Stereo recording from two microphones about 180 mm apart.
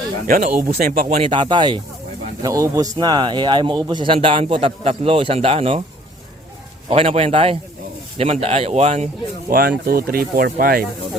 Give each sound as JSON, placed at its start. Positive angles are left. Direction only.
{"t": 0.3, "sound": "speech", "side_deg": -45}
{"t": 1.3, "sound": "a man's voice", "side_deg": -25}
{"t": 6.9, "sound": "speech", "side_deg": -35}
{"t": 9.5, "sound": "speech", "side_deg": -55}